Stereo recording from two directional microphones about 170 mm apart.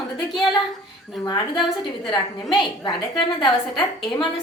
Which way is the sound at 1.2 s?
25° left (ahead or behind).